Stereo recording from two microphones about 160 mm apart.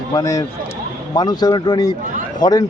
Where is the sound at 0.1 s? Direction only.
25° left (ahead or behind).